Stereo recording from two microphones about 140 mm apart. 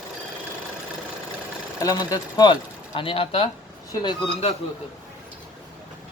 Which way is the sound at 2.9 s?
40° left (ahead or behind).